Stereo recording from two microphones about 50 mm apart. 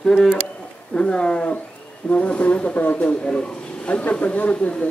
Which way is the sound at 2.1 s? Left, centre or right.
Left.